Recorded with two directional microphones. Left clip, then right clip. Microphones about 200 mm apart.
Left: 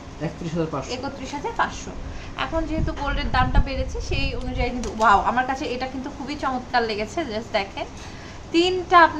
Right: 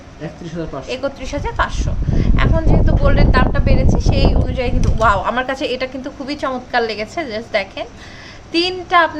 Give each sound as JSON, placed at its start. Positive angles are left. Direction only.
{"t": 0.9, "sound": "speech", "side_deg": -40}
{"t": 2.3, "sound": "speech", "side_deg": -30}